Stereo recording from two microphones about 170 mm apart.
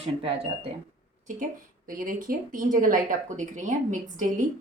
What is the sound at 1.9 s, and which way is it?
A woman's voice, 55° right (ahead or behind).